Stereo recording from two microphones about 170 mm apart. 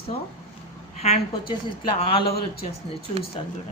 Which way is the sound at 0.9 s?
40° left (ahead or behind).